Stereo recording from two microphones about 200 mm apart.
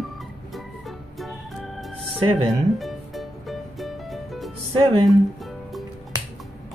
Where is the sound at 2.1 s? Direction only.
25° right (ahead or behind).